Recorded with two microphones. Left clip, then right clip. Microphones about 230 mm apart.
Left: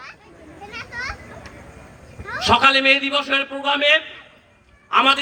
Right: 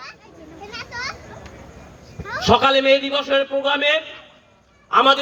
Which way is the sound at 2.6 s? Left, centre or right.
Left.